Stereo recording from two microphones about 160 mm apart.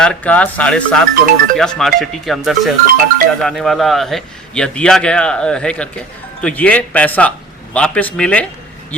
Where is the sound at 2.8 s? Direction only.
65° right (ahead or behind).